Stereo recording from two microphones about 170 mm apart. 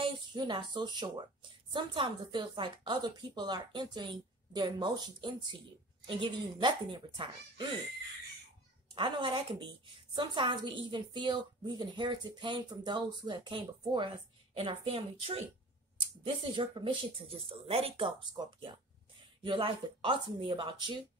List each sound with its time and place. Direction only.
0.0 s a woman's voice: 25° right (ahead or behind)
8.9 s a woman's voice: 25° right (ahead or behind)
16.5 s a woman's voice: 30° right (ahead or behind)